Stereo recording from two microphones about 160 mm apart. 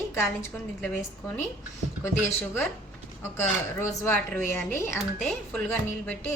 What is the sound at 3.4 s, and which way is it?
A woman's voice, 15° left (ahead or behind).